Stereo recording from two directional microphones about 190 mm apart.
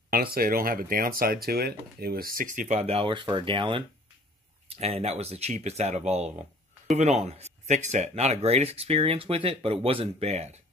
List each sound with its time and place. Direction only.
0.1 s speech: 50° right (ahead or behind); by 10.6 s 35° right (ahead or behind)